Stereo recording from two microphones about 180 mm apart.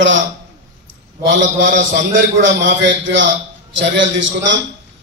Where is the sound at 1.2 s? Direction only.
90° right.